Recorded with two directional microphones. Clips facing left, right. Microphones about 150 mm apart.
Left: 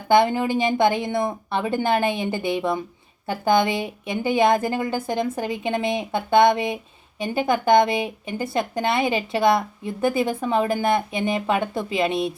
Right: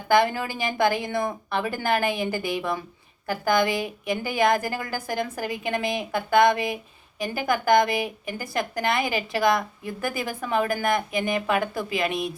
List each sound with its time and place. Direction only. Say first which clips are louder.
0.1 s speech: left 4 dB; 20° left (ahead or behind)